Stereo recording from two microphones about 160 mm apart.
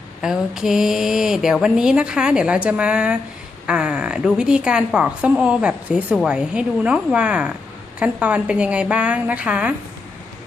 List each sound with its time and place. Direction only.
0.2 s a woman's voice: 5° right (ahead or behind)